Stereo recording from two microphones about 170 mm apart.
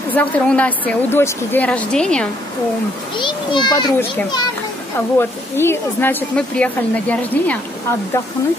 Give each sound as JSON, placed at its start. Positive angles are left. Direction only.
{"t": 0.1, "sound": "speech", "side_deg": 10}
{"t": 3.2, "sound": "a child's voice", "side_deg": 30}
{"t": 4.9, "sound": "speech", "side_deg": 15}